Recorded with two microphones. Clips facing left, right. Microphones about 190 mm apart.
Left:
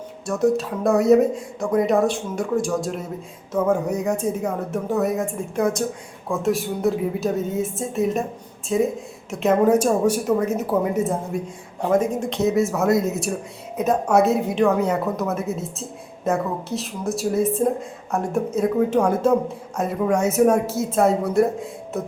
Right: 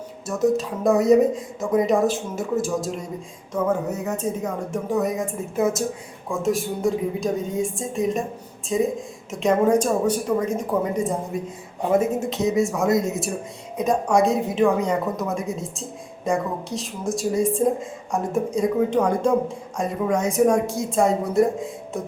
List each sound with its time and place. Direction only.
0.3 s a woman's voice: centre (ahead or behind)
3.5 s a woman's voice: 10° left (ahead or behind)
11.8 s a woman's voice: 5° right (ahead or behind)